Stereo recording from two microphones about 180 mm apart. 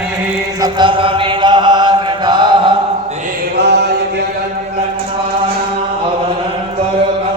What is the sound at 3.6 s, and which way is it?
Chant, 65° right (ahead or behind).